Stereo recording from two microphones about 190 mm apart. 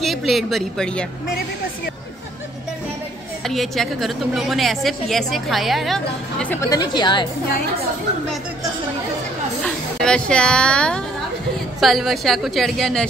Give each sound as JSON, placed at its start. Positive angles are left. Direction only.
{"t": 0.0, "sound": "a woman's voice", "side_deg": 0}
{"t": 3.4, "sound": "a woman's voice", "side_deg": 0}
{"t": 9.9, "sound": "a woman's voice", "side_deg": 5}